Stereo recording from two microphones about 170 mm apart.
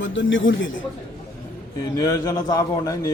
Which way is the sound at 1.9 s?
20° left (ahead or behind).